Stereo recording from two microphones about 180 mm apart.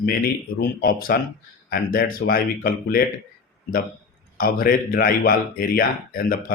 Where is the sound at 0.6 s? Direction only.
55° left (ahead or behind).